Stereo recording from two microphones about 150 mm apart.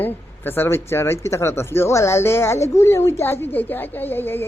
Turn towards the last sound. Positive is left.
turn(degrees=15)  # may be behind; listen again after turning